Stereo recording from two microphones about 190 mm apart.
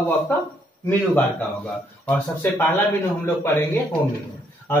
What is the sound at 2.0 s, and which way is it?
Speech, 10° left (ahead or behind).